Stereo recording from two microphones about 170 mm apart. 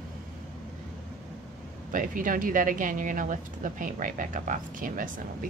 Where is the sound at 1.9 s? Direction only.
55° right (ahead or behind).